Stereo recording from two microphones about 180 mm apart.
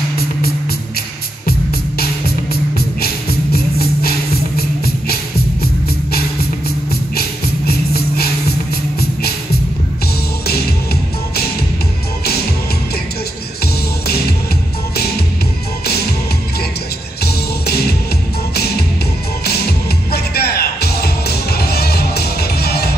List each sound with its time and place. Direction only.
2.0 s music: 60° left (ahead or behind)
6.9 s music: 60° left (ahead or behind)
10.4 s music: 60° left (ahead or behind)
15.8 s music: 60° left (ahead or behind)
17.2 s music: 60° left (ahead or behind)
19.4 s music: 60° left (ahead or behind)